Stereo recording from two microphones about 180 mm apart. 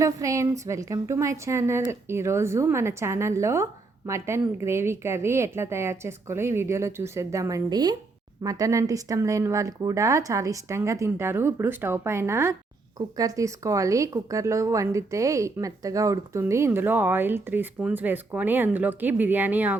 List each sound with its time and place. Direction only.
0.0 s a woman's voice: 15° right (ahead or behind)